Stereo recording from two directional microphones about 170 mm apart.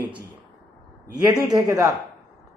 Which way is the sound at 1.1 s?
25° right (ahead or behind).